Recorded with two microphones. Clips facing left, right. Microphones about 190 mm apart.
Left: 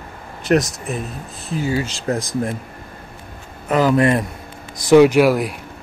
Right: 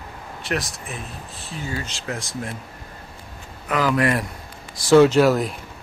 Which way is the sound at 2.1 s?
35° left (ahead or behind).